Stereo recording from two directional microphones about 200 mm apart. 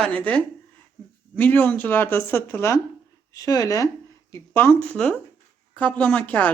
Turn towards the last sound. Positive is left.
turn(degrees=5)  # may be behind; listen again after turning